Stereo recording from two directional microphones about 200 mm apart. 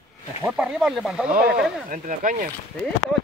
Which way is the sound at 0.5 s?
5° right (ahead or behind).